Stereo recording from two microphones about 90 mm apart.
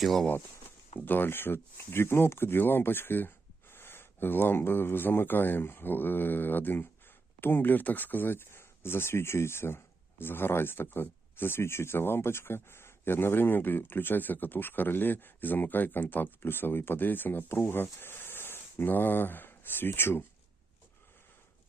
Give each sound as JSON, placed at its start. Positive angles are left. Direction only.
{"t": 0.0, "sound": "speech", "side_deg": 0}
{"t": 0.9, "sound": "speech", "side_deg": 20}